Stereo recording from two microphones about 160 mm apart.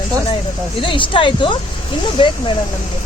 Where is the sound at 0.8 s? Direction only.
30° left (ahead or behind).